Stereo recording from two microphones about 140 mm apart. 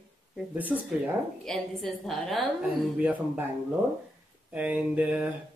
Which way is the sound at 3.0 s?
10° right (ahead or behind).